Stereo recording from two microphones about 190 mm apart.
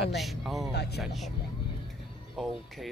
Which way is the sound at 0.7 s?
60° left (ahead or behind).